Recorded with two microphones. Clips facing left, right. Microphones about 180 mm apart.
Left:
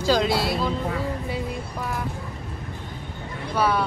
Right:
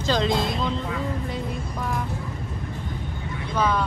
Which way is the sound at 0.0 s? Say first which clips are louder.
Left 2 dB; 5° left (ahead or behind).